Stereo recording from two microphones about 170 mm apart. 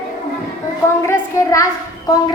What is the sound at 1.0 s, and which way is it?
Speech, 15° left (ahead or behind).